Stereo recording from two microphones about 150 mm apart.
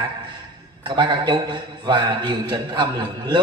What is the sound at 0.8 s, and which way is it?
A man's voice, 30° right (ahead or behind).